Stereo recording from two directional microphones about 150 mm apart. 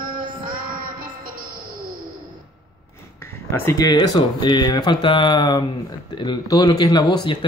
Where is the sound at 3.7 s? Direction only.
25° left (ahead or behind).